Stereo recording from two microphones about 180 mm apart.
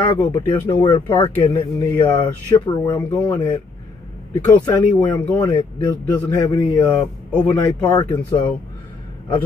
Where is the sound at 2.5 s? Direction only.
25° left (ahead or behind).